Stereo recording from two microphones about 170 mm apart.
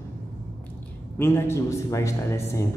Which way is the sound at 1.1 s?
15° left (ahead or behind).